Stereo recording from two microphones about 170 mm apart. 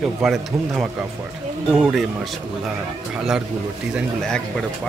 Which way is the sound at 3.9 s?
5° left (ahead or behind).